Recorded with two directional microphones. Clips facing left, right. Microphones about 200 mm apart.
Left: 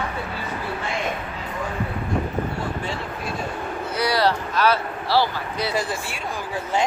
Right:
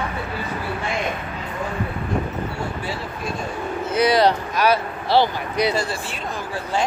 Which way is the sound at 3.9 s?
20° right (ahead or behind).